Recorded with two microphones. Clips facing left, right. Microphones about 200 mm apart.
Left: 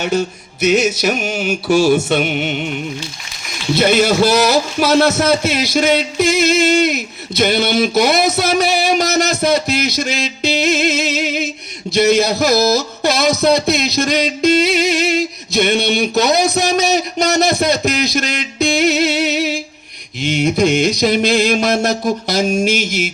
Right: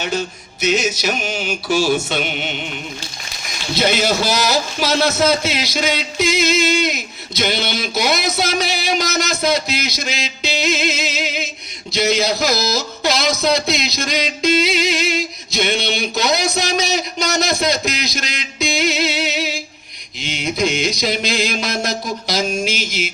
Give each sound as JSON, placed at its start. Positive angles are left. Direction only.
{"t": 0.0, "sound": "music", "side_deg": 50}
{"t": 3.8, "sound": "a man's voice", "side_deg": 55}
{"t": 8.4, "sound": "a sound", "side_deg": 55}
{"t": 11.9, "sound": "speech", "side_deg": 55}
{"t": 13.4, "sound": "music", "side_deg": 55}
{"t": 20.2, "sound": "a man's voice", "side_deg": 50}
{"t": 22.6, "sound": "music", "side_deg": 50}